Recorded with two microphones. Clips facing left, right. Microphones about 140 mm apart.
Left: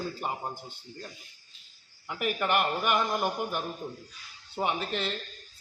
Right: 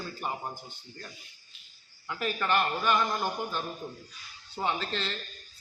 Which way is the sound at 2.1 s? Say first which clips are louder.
Left 1 dB; 15° left (ahead or behind).